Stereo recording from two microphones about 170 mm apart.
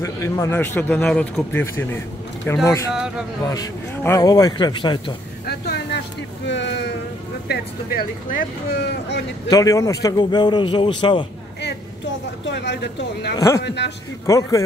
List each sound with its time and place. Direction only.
0.0 s a man's voice: 15° left (ahead or behind)
5.5 s vehicle: 75° left (ahead or behind)
6.4 s a sound: 90° left
7.4 s speech: 65° left (ahead or behind)
9.5 s a man's voice: 20° left (ahead or behind)
12.4 s a man's voice: 90° left
14.2 s a man's voice: 20° left (ahead or behind)